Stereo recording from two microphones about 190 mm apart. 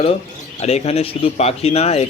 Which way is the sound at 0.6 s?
35° left (ahead or behind).